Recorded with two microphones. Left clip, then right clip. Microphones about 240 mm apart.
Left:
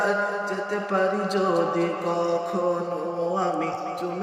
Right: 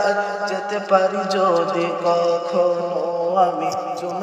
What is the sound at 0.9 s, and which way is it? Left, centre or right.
Speech, centre.